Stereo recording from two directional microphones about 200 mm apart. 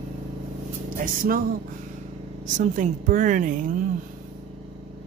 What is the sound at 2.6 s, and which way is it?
A woman's voice, 40° right (ahead or behind).